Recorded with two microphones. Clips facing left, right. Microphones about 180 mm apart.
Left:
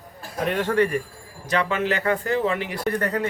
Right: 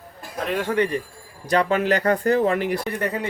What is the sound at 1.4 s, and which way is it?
Speech, 40° right (ahead or behind).